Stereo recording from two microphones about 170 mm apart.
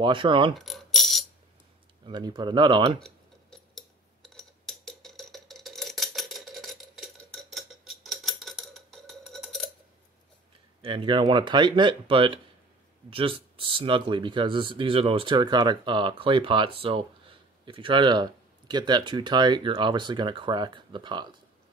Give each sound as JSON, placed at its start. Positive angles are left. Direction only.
{"t": 0.0, "sound": "speech", "side_deg": -30}
{"t": 0.6, "sound": "a sound", "side_deg": 0}
{"t": 2.0, "sound": "speech", "side_deg": -25}
{"t": 3.0, "sound": "a sound", "side_deg": 5}
{"t": 7.5, "sound": "clock", "side_deg": 0}
{"t": 10.8, "sound": "speech", "side_deg": -30}